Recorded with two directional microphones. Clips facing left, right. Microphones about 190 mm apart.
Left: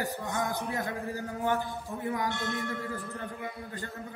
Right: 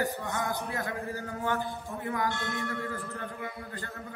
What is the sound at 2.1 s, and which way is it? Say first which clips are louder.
Speech: right 1 dB; 15° left (ahead or behind).